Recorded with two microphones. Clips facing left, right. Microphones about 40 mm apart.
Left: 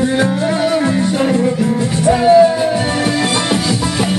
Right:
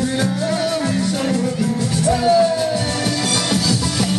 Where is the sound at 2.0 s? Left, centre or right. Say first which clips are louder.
Left 6 dB; left.